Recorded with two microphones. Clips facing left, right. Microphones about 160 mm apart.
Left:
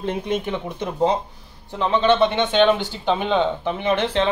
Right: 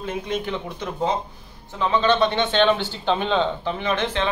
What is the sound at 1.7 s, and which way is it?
Speech, 25° left (ahead or behind).